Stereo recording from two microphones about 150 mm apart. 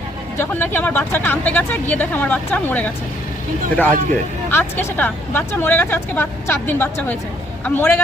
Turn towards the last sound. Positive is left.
turn(degrees=15)  # may be behind; listen again after turning